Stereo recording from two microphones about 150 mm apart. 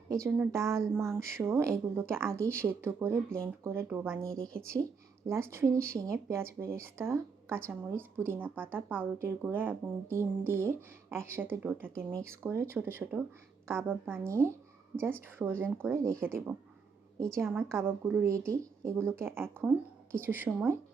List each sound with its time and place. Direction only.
0.1 s speech: 15° right (ahead or behind)